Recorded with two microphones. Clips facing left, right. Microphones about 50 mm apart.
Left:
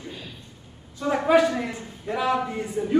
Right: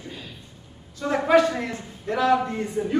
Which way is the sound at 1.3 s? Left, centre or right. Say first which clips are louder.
Right 1 dB; centre.